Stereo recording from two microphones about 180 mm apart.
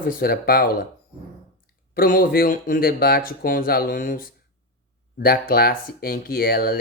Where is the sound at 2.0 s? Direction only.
50° left (ahead or behind).